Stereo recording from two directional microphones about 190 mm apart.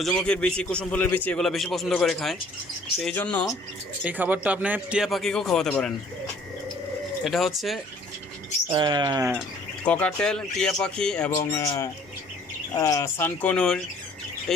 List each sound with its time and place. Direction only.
0.0 s a man's voice: 5° left (ahead or behind)
4.0 s a man's voice: 10° right (ahead or behind)
7.3 s a man's voice: centre (ahead or behind)
8.7 s speech: 25° right (ahead or behind)
9.8 s a man's voice: 5° left (ahead or behind)